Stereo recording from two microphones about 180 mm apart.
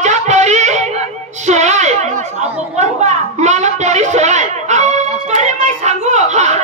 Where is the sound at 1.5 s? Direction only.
40° right (ahead or behind).